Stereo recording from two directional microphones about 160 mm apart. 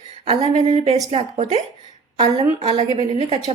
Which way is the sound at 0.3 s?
45° right (ahead or behind).